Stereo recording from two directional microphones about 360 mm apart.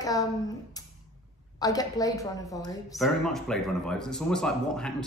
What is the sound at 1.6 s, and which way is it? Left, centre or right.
A woman's voice, centre.